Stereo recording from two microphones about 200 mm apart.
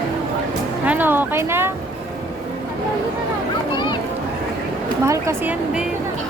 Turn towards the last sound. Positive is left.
turn(degrees=-15)  # may be behind; listen again after turning